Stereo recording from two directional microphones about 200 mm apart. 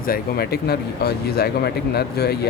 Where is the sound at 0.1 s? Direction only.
50° left (ahead or behind).